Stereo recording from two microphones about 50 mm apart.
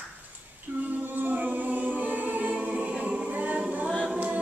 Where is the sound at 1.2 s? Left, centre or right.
Right.